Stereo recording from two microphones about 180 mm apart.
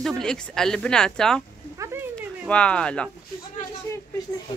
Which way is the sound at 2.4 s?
5° left (ahead or behind).